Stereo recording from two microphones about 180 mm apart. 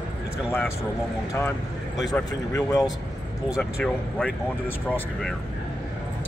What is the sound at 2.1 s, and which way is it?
Speech, 20° left (ahead or behind).